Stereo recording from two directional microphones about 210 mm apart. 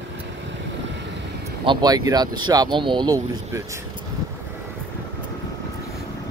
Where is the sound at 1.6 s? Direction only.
20° right (ahead or behind).